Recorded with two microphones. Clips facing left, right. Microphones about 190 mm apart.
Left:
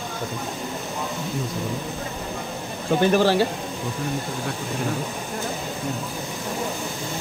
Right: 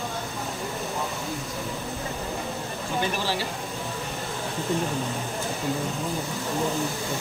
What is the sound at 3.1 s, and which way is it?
Speech, 55° left (ahead or behind).